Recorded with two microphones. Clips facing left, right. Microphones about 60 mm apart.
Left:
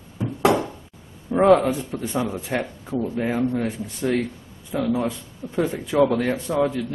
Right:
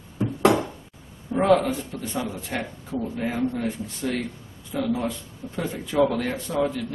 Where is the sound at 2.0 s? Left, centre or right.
Left.